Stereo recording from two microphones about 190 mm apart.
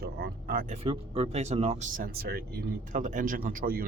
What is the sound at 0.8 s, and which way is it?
Speech, 30° right (ahead or behind).